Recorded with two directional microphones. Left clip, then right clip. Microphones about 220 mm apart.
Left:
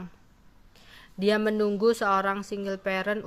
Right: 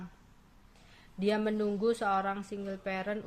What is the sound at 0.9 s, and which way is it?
Speech, 25° left (ahead or behind).